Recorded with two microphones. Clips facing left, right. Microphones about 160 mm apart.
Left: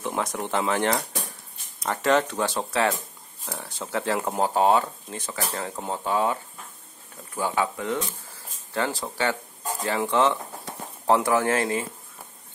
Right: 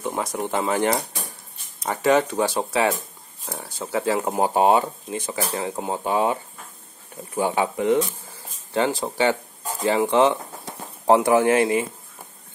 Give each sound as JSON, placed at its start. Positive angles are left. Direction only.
{"t": 0.0, "sound": "speech", "side_deg": -5}